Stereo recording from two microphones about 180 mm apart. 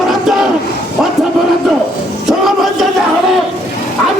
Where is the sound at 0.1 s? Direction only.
Centre (ahead or behind).